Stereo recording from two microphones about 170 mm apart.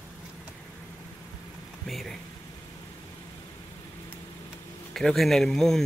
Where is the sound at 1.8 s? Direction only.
Centre (ahead or behind).